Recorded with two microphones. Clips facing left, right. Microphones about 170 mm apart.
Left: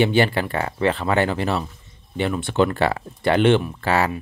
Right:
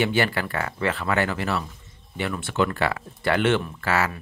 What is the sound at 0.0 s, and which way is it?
Speech, 25° left (ahead or behind).